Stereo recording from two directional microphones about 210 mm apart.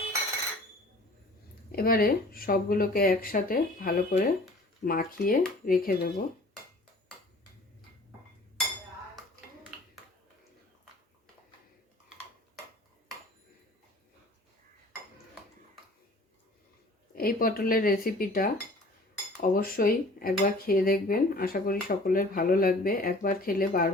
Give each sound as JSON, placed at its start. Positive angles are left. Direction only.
{"t": 1.7, "sound": "cutlery", "side_deg": 45}
{"t": 17.2, "sound": "cutlery", "side_deg": 45}